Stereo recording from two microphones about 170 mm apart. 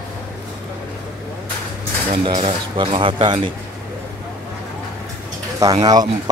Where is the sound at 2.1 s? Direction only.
30° right (ahead or behind).